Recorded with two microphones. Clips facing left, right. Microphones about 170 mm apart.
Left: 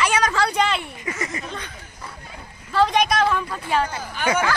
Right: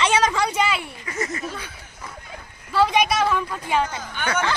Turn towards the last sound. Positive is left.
turn(degrees=10)  # may be behind; listen again after turning